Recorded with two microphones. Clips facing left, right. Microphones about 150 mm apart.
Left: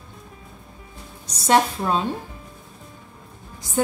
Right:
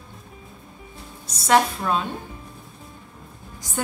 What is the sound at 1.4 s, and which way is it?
Speech, 25° left (ahead or behind).